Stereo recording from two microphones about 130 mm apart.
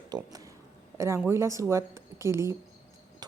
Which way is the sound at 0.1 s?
30° right (ahead or behind).